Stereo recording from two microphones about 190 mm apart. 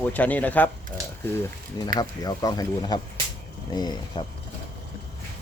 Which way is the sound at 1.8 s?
20° left (ahead or behind).